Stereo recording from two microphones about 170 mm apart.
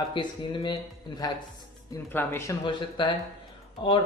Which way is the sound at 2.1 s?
15° left (ahead or behind).